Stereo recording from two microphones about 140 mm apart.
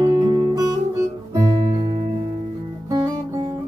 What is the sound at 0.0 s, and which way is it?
Music, 35° right (ahead or behind).